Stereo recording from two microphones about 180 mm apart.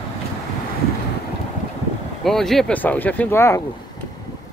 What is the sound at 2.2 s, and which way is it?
Speech, centre (ahead or behind).